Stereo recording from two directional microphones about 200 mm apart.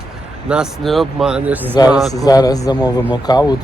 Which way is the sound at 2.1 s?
20° left (ahead or behind).